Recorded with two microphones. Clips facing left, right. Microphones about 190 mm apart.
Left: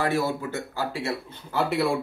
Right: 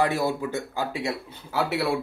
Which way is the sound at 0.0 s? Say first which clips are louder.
Right 1 dB; 15° right (ahead or behind).